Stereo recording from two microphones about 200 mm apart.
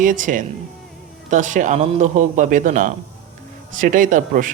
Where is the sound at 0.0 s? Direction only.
40° right (ahead or behind).